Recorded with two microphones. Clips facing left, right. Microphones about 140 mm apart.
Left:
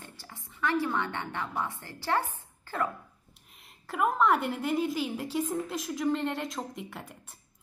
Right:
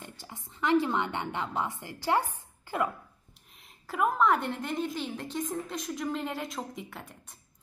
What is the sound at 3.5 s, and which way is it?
A woman's voice, centre (ahead or behind).